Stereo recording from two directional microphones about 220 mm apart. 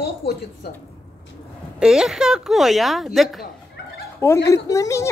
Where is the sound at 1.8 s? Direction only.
5° right (ahead or behind).